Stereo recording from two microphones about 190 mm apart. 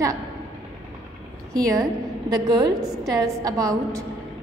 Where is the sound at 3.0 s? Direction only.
20° right (ahead or behind).